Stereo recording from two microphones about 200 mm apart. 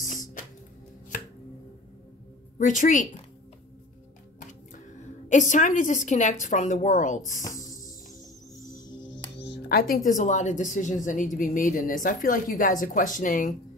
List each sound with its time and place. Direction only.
0.0 s music: 40° left (ahead or behind)
2.6 s a woman's voice: 40° left (ahead or behind)
4.4 s speech: 40° left (ahead or behind)
8.6 s music: 20° left (ahead or behind)
9.4 s music: 55° left (ahead or behind)
10.0 s a woman's voice: 40° left (ahead or behind)